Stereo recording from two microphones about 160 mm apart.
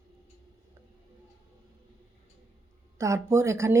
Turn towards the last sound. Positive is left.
turn(degrees=-20)  # may be behind; listen again after turning